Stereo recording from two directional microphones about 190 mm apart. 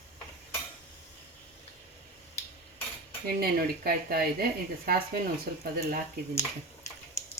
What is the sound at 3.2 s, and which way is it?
Speech, 55° right (ahead or behind).